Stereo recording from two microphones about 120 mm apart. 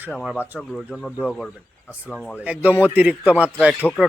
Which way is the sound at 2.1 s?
5° left (ahead or behind).